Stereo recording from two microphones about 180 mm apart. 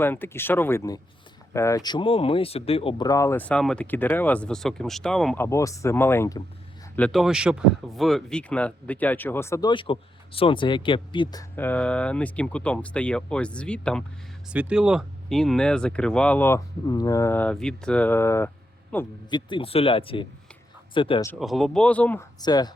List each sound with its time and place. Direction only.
0.0 s speech: 10° left (ahead or behind); by 3.1 s 30° left (ahead or behind)
3.1 s speech: 15° left (ahead or behind)
5.4 s speech: 15° left (ahead or behind)
6.9 s speech: 5° left (ahead or behind); by 11.4 s 25° left (ahead or behind)
11.5 s speech: 10° left (ahead or behind)
14.5 s speech: 5° right (ahead or behind); by 19.0 s 10° left (ahead or behind)
19.3 s speech: 25° left (ahead or behind)
21.3 s speech: centre (ahead or behind)
22.4 s speech: 20° left (ahead or behind)